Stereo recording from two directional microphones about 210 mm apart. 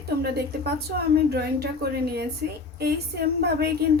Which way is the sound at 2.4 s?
45° right (ahead or behind).